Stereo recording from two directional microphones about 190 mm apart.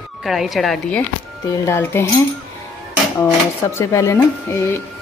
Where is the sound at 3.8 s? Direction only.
15° left (ahead or behind).